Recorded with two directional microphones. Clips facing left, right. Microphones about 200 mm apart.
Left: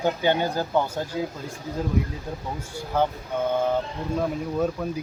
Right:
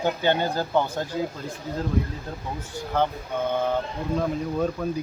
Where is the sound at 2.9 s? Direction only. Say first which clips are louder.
Left 1 dB; 10° left (ahead or behind).